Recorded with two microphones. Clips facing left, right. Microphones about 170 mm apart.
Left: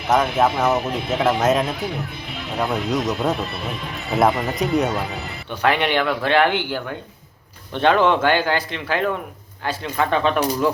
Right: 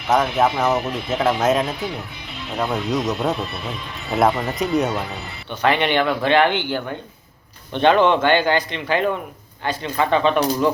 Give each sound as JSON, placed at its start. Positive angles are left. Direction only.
{"t": 0.1, "sound": "speech", "side_deg": 0}